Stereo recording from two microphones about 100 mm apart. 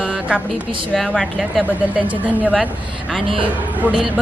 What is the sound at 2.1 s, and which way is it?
Speech, 15° right (ahead or behind).